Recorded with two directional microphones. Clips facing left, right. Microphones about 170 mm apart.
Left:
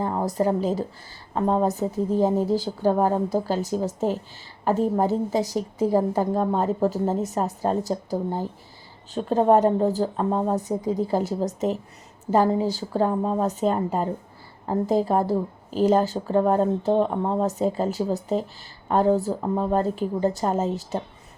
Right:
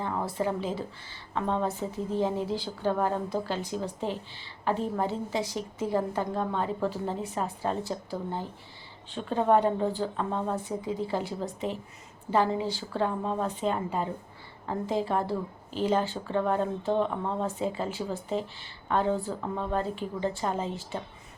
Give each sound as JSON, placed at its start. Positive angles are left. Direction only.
{"t": 0.0, "sound": "a woman's voice", "side_deg": 40}